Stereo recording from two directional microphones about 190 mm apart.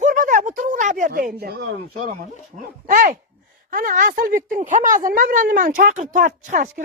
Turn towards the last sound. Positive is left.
turn(degrees=-40)  # may be behind; listen again after turning